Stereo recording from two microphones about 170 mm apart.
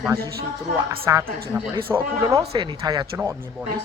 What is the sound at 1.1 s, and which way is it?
Speech, 20° right (ahead or behind).